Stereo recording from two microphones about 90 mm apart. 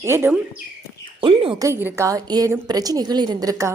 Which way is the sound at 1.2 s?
75° right (ahead or behind).